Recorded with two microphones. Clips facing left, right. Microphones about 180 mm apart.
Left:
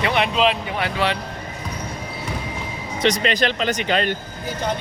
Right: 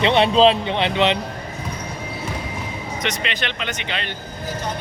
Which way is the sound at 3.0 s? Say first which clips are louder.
Left 8 dB; 35° left (ahead or behind).